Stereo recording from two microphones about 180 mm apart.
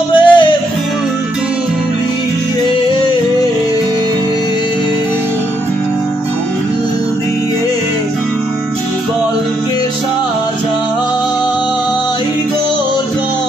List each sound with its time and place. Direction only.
0.1 s music: 25° left (ahead or behind)